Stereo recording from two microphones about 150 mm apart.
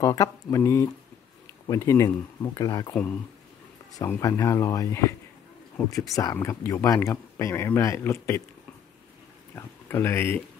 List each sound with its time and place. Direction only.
0.0 s speech: 25° left (ahead or behind)
4.0 s speech: 20° left (ahead or behind)
9.6 s speech: 15° left (ahead or behind)